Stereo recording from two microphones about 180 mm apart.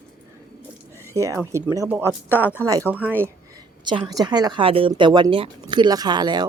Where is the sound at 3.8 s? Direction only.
20° right (ahead or behind).